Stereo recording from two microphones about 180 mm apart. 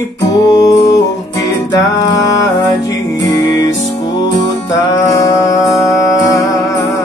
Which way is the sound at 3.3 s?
15° left (ahead or behind).